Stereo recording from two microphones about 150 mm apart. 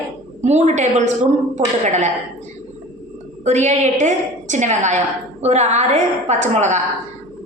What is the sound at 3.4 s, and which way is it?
A woman's voice, 50° right (ahead or behind).